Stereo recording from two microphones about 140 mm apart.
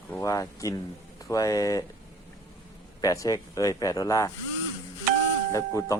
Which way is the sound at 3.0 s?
25° left (ahead or behind).